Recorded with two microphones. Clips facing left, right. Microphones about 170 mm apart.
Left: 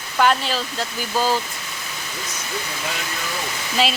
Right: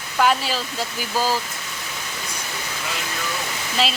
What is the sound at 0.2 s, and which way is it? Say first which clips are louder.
Speech: left 1 dB; 5° right (ahead or behind).